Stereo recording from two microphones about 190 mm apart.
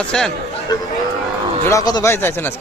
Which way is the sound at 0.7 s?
20° left (ahead or behind).